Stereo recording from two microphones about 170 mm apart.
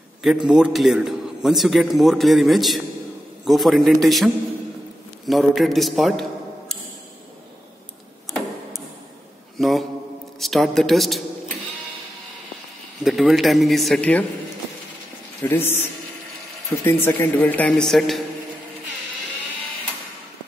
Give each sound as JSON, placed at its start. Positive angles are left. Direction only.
{"t": 0.2, "sound": "a man's voice", "side_deg": 0}
{"t": 9.6, "sound": "a sound", "side_deg": 0}
{"t": 10.4, "sound": "a man's voice", "side_deg": 0}
{"t": 13.0, "sound": "a man's voice", "side_deg": 0}
{"t": 15.4, "sound": "a man's voice", "side_deg": 15}